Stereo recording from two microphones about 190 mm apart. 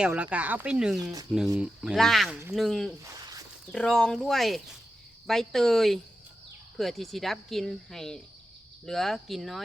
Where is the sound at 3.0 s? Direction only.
20° right (ahead or behind).